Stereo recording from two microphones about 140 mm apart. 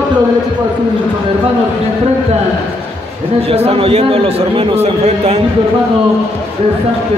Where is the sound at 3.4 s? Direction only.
45° right (ahead or behind).